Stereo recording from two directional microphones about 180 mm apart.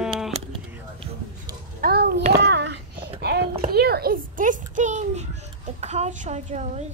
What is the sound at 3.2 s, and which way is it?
Clip-clop, 65° right (ahead or behind).